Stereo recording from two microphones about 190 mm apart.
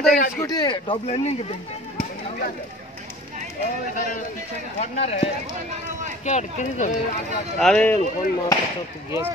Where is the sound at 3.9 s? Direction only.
45° left (ahead or behind).